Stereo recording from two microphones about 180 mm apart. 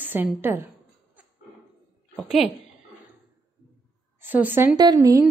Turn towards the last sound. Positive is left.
turn(degrees=-20)  # may be behind; listen again after turning